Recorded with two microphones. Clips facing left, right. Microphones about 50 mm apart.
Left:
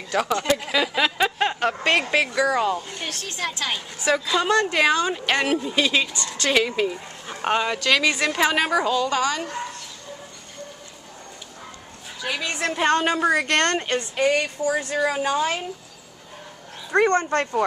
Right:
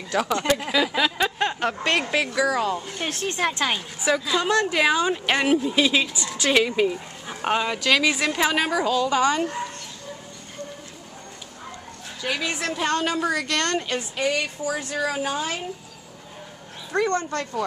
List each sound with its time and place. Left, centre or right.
0.1 s a woman's voice: centre
3.0 s speech: centre
3.3 s a woman's voice: right
4.0 s a woman's voice: centre
12.2 s a woman's voice: centre
12.6 s a woman's voice: left
13.5 s speech: left
14.8 s a woman's voice: centre
16.9 s speech: left